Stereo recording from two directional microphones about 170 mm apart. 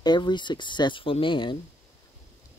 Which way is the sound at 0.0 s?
25° left (ahead or behind).